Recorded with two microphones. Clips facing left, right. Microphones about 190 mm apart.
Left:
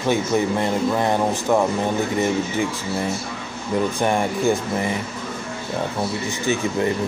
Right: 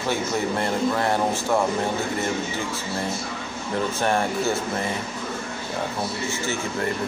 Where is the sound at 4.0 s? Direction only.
15° left (ahead or behind).